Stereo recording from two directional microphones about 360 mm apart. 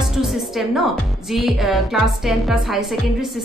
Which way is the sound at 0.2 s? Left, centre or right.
Centre.